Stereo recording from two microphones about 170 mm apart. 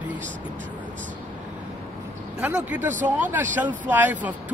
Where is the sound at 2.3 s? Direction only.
10° right (ahead or behind).